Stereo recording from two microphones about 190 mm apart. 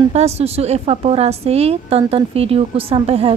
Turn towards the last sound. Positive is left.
turn(degrees=-30)  # may be behind; listen again after turning